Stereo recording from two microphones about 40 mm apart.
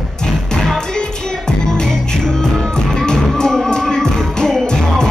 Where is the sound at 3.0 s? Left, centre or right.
Centre.